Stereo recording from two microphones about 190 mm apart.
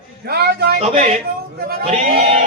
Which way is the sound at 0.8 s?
35° right (ahead or behind).